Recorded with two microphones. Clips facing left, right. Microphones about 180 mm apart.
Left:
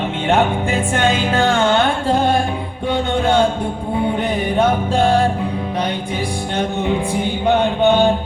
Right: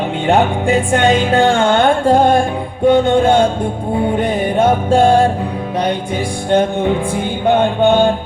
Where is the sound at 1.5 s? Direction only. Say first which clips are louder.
Right 3 dB; 50° right (ahead or behind).